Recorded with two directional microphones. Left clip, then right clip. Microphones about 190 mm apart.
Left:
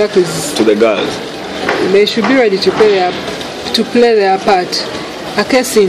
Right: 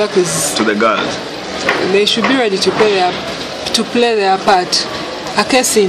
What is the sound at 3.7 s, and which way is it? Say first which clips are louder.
Speech: left 4 dB; 10° left (ahead or behind).